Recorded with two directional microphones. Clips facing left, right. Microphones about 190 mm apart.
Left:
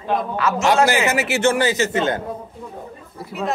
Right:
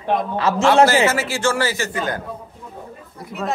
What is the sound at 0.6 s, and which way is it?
A man's voice, 15° left (ahead or behind).